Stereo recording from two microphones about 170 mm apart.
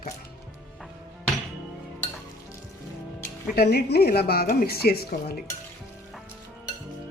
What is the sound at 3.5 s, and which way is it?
A woman's voice, 70° left (ahead or behind).